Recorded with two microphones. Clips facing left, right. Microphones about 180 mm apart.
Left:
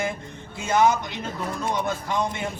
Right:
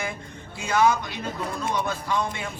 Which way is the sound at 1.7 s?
20° left (ahead or behind).